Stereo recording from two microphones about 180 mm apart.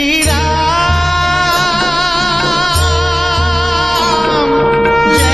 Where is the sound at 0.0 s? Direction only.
Centre (ahead or behind).